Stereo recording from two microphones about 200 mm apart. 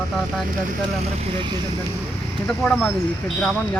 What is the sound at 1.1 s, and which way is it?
Speech, 25° right (ahead or behind).